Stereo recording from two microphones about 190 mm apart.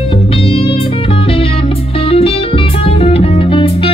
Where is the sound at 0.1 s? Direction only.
30° left (ahead or behind).